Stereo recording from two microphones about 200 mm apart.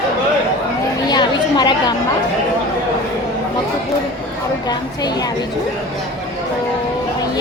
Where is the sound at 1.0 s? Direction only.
20° left (ahead or behind).